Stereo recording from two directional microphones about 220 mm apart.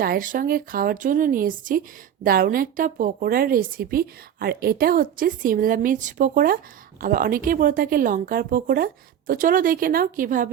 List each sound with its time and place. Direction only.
0.0 s a woman's voice: 40° right (ahead or behind)